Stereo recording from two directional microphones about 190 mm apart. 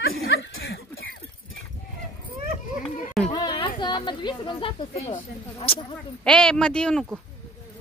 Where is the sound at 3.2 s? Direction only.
25° left (ahead or behind).